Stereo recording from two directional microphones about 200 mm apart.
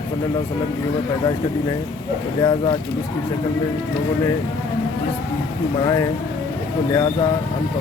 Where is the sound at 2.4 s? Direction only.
20° left (ahead or behind).